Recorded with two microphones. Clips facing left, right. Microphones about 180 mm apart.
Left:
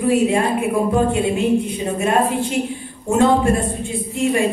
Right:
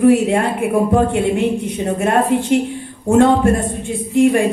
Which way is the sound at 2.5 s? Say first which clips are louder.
Right 6 dB; 65° right (ahead or behind).